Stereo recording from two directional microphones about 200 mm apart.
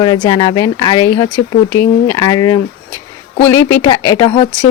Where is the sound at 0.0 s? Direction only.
20° left (ahead or behind).